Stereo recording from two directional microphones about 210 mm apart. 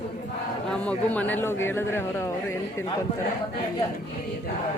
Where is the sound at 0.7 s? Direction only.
5° left (ahead or behind).